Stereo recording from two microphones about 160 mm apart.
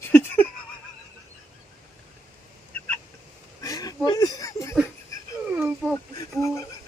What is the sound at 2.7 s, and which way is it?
Fowl, 10° left (ahead or behind).